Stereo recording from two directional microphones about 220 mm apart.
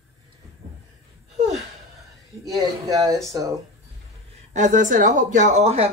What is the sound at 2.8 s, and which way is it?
Speech, 15° right (ahead or behind).